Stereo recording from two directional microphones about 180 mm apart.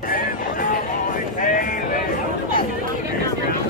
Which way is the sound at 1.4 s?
50° left (ahead or behind).